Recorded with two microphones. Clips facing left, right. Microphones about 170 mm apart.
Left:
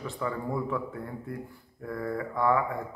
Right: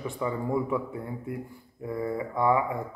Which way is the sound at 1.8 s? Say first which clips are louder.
Right 2 dB; 20° right (ahead or behind).